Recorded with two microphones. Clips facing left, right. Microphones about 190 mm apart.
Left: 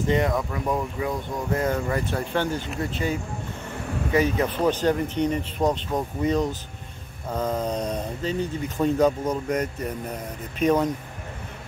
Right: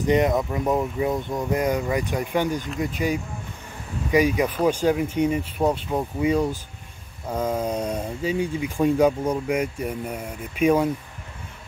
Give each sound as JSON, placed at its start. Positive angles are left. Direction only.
{"t": 0.0, "sound": "speech", "side_deg": -20}
{"t": 4.1, "sound": "speech", "side_deg": -10}